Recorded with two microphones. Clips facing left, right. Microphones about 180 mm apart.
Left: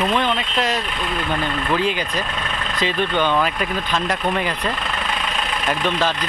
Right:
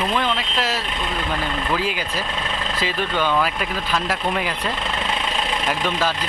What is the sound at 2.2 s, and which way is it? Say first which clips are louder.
Vehicle: even; 25° right (ahead or behind).